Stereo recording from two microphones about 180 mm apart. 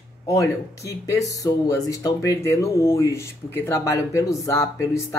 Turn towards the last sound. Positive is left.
turn(degrees=15)  # may be behind; listen again after turning